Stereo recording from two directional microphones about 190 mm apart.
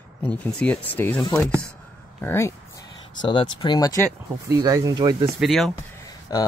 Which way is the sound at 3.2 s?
25° left (ahead or behind).